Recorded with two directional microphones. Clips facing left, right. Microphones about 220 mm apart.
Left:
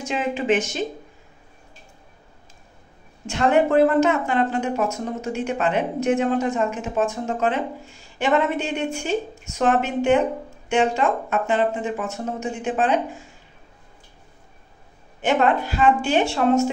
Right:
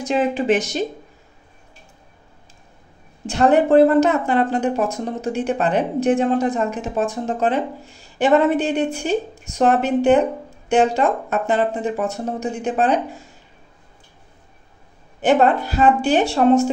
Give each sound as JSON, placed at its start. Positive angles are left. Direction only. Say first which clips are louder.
{"t": 0.0, "sound": "speech", "louder": "right 5 dB", "side_deg": -35}
{"t": 3.3, "sound": "speech", "louder": "right 4 dB", "side_deg": -35}
{"t": 15.2, "sound": "speech", "louder": "right 4 dB", "side_deg": -35}